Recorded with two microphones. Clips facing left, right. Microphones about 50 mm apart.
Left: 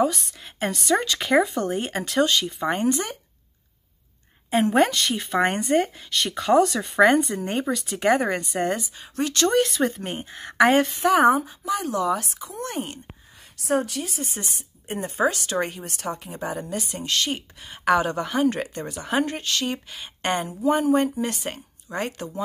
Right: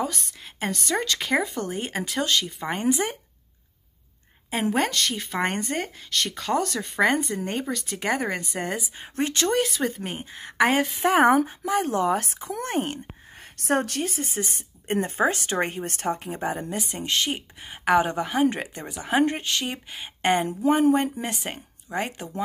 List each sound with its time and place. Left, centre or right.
0.0 s a woman's voice: centre
4.5 s a woman's voice: centre
8.9 s speech: right
9.5 s a woman's voice: centre
11.1 s a woman's voice: right
14.0 s speech: right
17.0 s speech: centre